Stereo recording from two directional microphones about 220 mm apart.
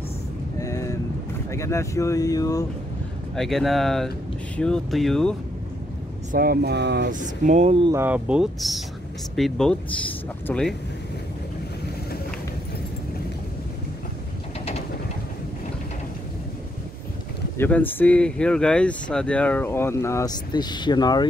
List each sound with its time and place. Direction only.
0.6 s vehicle: 15° left (ahead or behind)
1.5 s speech: 15° left (ahead or behind)
3.3 s speech: centre (ahead or behind)
6.3 s speech: 45° right (ahead or behind); by 7.9 s 25° right (ahead or behind)
7.9 s speech: 10° right (ahead or behind)
17.6 s speech: 10° left (ahead or behind)